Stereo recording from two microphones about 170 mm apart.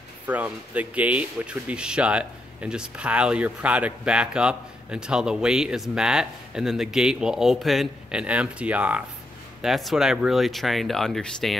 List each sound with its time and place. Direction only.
0.3 s speech: 10° right (ahead or behind)